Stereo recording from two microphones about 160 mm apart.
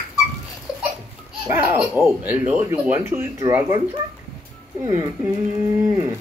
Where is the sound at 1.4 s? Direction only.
15° right (ahead or behind).